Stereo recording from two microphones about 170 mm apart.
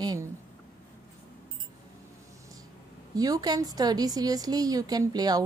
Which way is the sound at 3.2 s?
20° right (ahead or behind).